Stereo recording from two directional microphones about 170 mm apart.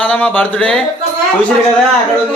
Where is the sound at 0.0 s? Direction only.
5° left (ahead or behind).